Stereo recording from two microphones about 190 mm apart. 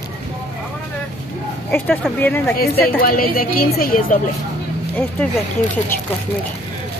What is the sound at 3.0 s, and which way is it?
A woman's voice, 50° left (ahead or behind).